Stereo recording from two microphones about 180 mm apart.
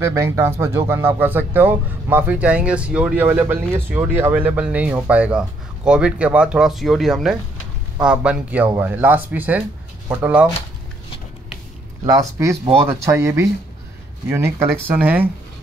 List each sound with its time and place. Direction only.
0.0 s speech: 15° right (ahead or behind)
12.0 s speech: 20° right (ahead or behind)